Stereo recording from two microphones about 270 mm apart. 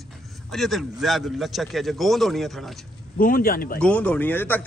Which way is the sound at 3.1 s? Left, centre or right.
Left.